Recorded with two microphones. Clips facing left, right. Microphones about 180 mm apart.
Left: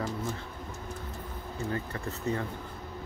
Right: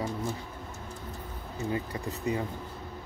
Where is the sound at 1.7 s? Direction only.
15° right (ahead or behind).